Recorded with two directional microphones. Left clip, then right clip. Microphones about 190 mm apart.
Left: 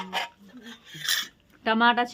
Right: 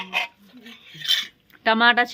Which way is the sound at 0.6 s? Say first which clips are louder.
Right 1 dB; 20° left (ahead or behind).